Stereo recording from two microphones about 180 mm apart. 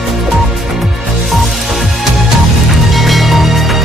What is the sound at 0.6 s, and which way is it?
Music, centre (ahead or behind).